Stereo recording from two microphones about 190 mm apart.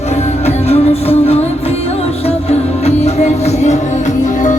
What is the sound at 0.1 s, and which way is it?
Music, 35° left (ahead or behind).